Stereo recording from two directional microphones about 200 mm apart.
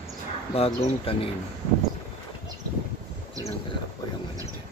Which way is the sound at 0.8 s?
30° left (ahead or behind).